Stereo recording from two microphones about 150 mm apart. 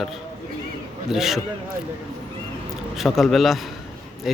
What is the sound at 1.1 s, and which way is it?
Speech, centre (ahead or behind).